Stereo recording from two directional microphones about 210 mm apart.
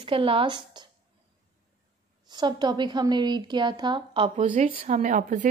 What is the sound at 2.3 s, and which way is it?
Speech, 20° right (ahead or behind).